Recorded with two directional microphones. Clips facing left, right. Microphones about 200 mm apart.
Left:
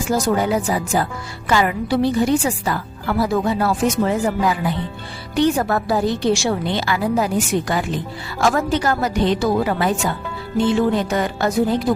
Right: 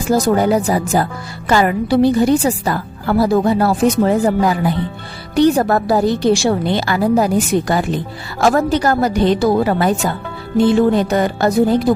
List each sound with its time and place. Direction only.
0.1 s a woman's voice: 40° right (ahead or behind)